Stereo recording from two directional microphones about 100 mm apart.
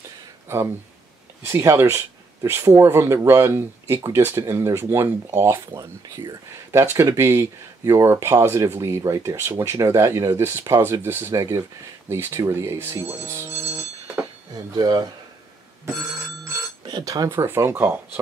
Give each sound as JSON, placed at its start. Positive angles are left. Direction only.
{"t": 1.4, "sound": "speech", "side_deg": -30}
{"t": 5.7, "sound": "speech", "side_deg": -40}
{"t": 6.7, "sound": "speech", "side_deg": -25}
{"t": 14.8, "sound": "speech", "side_deg": -40}
{"t": 16.8, "sound": "speech", "side_deg": -40}
{"t": 17.3, "sound": "speech", "side_deg": -25}